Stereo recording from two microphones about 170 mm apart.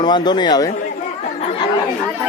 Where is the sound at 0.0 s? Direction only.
25° left (ahead or behind).